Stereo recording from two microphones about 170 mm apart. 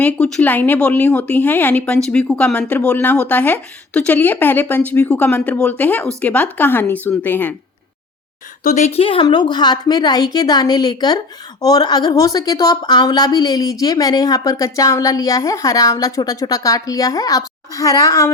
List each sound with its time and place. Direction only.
0.0 s speech: 5° left (ahead or behind)
8.6 s a woman's voice: 45° left (ahead or behind); by 18.3 s 20° left (ahead or behind)